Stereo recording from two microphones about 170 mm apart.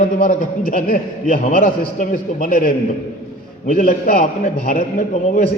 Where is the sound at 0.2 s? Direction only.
55° left (ahead or behind).